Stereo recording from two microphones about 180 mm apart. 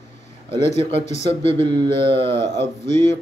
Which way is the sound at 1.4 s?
30° right (ahead or behind).